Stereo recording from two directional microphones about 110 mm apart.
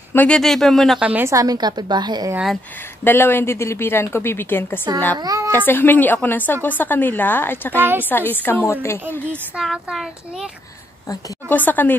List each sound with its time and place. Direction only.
0.3 s a child's voice: centre (ahead or behind)
1.0 s a woman's voice: 15° right (ahead or behind)
1.3 s a woman's voice: 35° right (ahead or behind)
3.0 s speech: 20° left (ahead or behind)
5.1 s a woman's voice: 35° right (ahead or behind)
5.7 s a woman's voice: 15° left (ahead or behind)
9.6 s a child's voice: 5° right (ahead or behind)
11.4 s a woman's voice: 15° left (ahead or behind)